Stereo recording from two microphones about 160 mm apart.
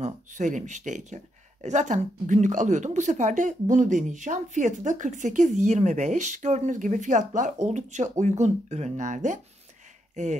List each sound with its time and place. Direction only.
0.0 s speech: 50° right (ahead or behind)